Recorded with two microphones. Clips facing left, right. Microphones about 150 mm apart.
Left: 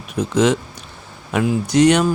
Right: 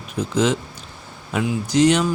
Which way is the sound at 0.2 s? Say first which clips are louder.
Left 3 dB; 75° left (ahead or behind).